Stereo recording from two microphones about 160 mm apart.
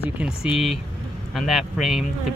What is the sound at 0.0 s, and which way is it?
Speech, 5° right (ahead or behind).